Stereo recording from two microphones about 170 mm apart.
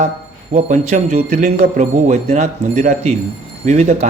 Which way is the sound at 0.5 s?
45° right (ahead or behind).